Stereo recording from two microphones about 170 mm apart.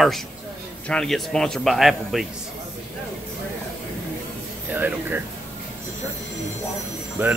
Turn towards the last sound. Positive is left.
turn(degrees=-10)  # may be behind; listen again after turning